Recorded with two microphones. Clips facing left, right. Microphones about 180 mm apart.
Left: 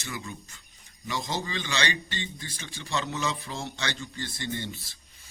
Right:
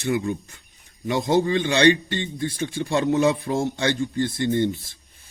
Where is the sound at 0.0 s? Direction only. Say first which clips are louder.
Right 14 dB; 55° right (ahead or behind).